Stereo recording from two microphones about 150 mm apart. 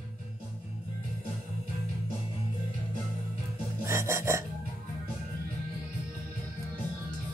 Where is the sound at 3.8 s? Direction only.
20° right (ahead or behind).